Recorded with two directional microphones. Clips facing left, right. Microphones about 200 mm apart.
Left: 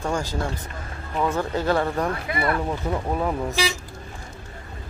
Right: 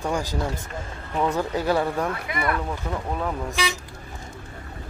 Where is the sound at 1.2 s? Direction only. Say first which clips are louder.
Even; 15° right (ahead or behind).